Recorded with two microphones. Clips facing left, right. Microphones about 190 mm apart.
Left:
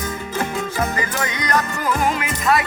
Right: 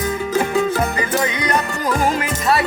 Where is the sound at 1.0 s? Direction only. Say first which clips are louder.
Right 4 dB; 25° right (ahead or behind).